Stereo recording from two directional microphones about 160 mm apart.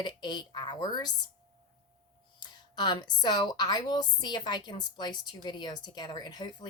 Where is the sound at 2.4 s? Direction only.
25° left (ahead or behind).